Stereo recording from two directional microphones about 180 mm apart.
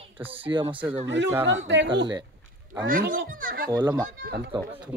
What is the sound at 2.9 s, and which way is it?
Speech, 50° right (ahead or behind).